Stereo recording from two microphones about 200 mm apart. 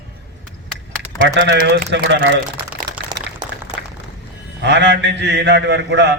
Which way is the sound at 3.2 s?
60° right (ahead or behind).